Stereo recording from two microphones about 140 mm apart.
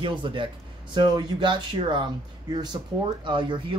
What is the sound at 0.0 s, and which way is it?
Speech, 35° right (ahead or behind).